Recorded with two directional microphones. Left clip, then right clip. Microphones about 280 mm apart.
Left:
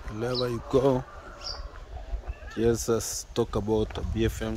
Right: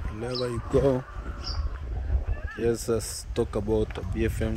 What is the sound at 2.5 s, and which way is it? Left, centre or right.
Speech, centre.